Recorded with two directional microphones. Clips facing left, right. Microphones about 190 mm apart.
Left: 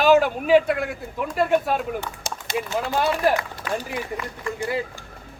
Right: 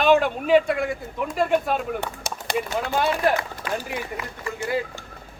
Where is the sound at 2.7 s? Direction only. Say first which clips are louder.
Left 2 dB; centre (ahead or behind).